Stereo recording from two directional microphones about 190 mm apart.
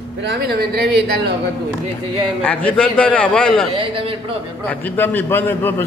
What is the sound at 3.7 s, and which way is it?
Speech, 30° right (ahead or behind).